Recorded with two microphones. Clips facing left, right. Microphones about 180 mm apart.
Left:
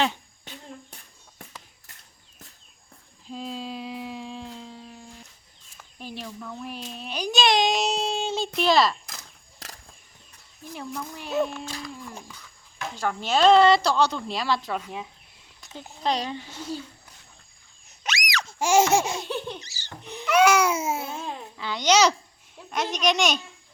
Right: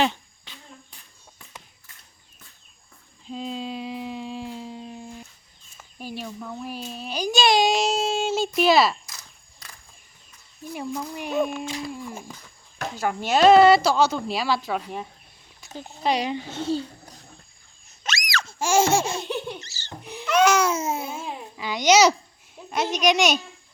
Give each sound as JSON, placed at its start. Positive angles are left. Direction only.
{"t": 3.2, "sound": "a sound", "side_deg": 0}
{"t": 5.7, "sound": "a sound", "side_deg": -5}
{"t": 8.5, "sound": "a woman's voice", "side_deg": -5}
{"t": 9.6, "sound": "a sound", "side_deg": 85}
{"t": 10.8, "sound": "a woman's voice", "side_deg": -15}
{"t": 15.8, "sound": "a woman's voice", "side_deg": -10}
{"t": 16.5, "sound": "a child's voice", "side_deg": -25}
{"t": 18.0, "sound": "baby laughter", "side_deg": 15}
{"t": 19.2, "sound": "laughter", "side_deg": -15}
{"t": 19.5, "sound": "laughter", "side_deg": 15}
{"t": 20.2, "sound": "babbling", "side_deg": 10}
{"t": 22.5, "sound": "a child's voice", "side_deg": -10}